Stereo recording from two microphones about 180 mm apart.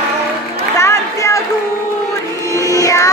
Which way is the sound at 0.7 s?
15° left (ahead or behind).